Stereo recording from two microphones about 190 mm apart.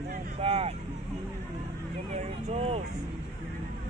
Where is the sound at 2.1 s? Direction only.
35° right (ahead or behind).